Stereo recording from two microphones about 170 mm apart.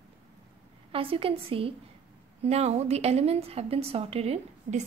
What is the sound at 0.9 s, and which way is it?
A woman's voice, 35° right (ahead or behind).